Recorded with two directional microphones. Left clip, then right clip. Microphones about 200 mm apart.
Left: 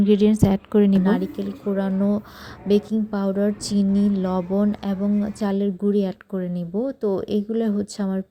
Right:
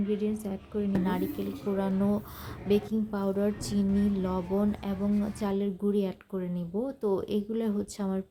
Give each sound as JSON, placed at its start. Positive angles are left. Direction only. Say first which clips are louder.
{"t": 0.1, "sound": "a woman's voice", "louder": "left 16 dB", "side_deg": 45}
{"t": 1.0, "sound": "speech", "louder": "left 8 dB", "side_deg": 25}